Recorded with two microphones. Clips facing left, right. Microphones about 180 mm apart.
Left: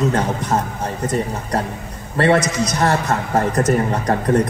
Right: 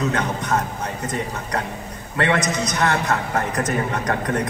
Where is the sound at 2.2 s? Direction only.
30° left (ahead or behind).